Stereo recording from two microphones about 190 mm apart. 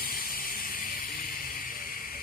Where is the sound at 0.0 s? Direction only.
50° left (ahead or behind).